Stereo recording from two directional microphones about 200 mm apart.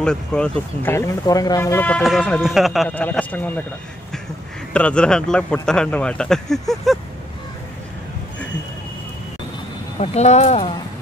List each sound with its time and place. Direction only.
0.0 s speech: 5° left (ahead or behind)
4.7 s speech: 5° left (ahead or behind)
9.9 s speech: 35° left (ahead or behind)